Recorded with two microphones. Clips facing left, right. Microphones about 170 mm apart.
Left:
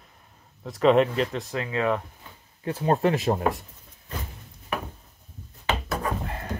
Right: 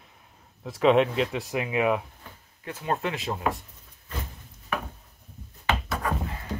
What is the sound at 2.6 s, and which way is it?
Speech, 30° left (ahead or behind).